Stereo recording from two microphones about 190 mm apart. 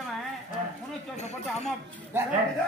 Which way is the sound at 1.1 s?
35° left (ahead or behind).